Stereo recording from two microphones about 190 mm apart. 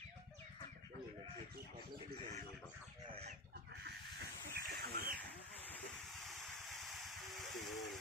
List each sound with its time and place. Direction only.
4.6 s bird: 50° right (ahead or behind)
5.2 s vehicle: 5° left (ahead or behind)